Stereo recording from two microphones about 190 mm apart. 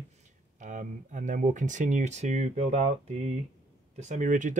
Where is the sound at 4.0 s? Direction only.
40° right (ahead or behind).